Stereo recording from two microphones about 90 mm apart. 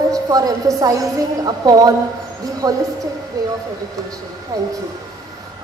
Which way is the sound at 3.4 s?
45° right (ahead or behind).